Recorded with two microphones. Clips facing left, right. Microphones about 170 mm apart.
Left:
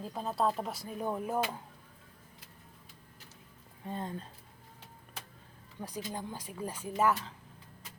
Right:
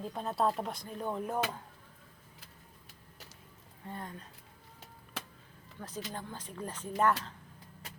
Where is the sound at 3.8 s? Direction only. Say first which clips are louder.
Left 5 dB; 25° left (ahead or behind).